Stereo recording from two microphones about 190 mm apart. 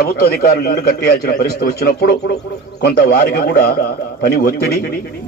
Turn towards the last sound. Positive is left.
turn(degrees=55)  # may be behind; listen again after turning